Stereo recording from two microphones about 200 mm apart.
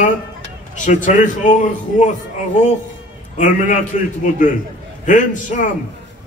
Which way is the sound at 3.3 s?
40° left (ahead or behind).